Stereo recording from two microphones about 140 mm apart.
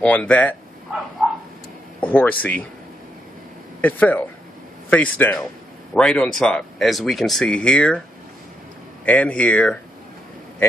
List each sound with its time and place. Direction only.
0.0 s speech: 10° left (ahead or behind)
1.2 s a sound: centre (ahead or behind)
2.0 s speech: 10° left (ahead or behind)
3.8 s speech: 10° left (ahead or behind)
9.0 s speech: 10° left (ahead or behind)